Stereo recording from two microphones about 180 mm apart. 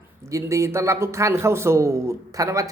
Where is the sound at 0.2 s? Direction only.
15° right (ahead or behind).